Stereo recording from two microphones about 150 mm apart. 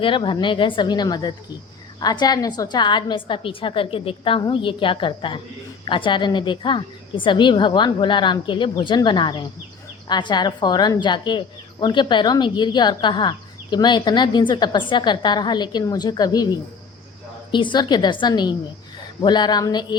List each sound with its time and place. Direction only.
0.0 s a woman's voice: 35° left (ahead or behind)